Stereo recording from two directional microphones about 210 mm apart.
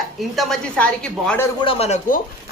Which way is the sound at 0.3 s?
Centre (ahead or behind).